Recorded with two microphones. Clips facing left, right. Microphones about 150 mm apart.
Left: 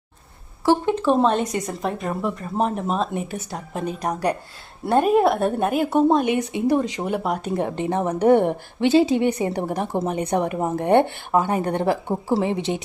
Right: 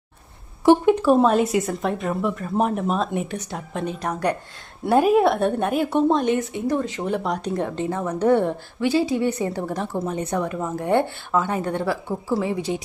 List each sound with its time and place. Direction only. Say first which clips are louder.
0.6 s speech: right 4 dB; 15° right (ahead or behind); by 3.8 s 5° left (ahead or behind)
4.0 s a woman's voice: left 2 dB; 15° left (ahead or behind)
4.9 s a woman's voice: even; 5° right (ahead or behind); by 12.8 s 25° left (ahead or behind)